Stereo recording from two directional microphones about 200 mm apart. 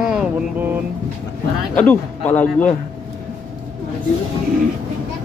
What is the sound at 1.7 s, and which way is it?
A man's voice, 10° left (ahead or behind).